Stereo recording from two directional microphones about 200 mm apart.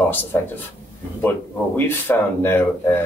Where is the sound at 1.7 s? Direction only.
10° left (ahead or behind).